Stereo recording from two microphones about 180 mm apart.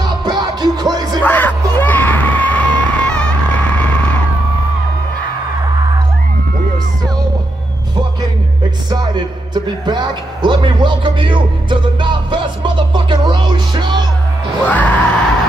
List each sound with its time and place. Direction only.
0.0 s music: 25° right (ahead or behind)
1.2 s music: 10° left (ahead or behind)
8.9 s music: 25° right (ahead or behind)
14.7 s music: 10° left (ahead or behind)